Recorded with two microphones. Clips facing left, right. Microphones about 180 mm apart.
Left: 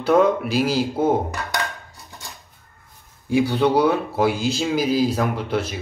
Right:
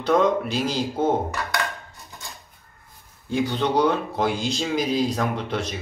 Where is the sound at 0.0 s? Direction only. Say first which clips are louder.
Left 3 dB; 10° left (ahead or behind).